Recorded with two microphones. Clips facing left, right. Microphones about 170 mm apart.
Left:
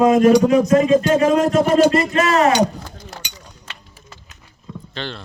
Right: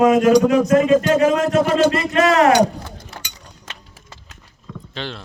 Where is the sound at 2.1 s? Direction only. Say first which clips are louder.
Right 2 dB; 60° right (ahead or behind).